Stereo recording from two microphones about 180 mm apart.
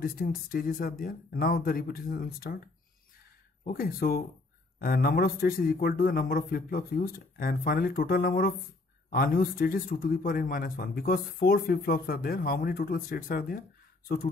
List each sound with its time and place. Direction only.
0.0 s speech: 55° left (ahead or behind)
3.6 s a man's voice: 55° left (ahead or behind)